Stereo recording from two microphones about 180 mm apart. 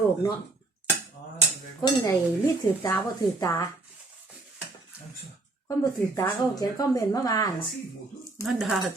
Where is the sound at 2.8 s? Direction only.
20° left (ahead or behind).